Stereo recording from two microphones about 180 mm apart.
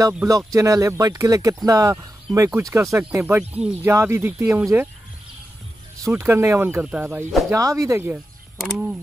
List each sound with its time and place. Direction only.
0.5 s speech: 20° right (ahead or behind)
6.0 s speech: 15° right (ahead or behind)
8.5 s speech: centre (ahead or behind)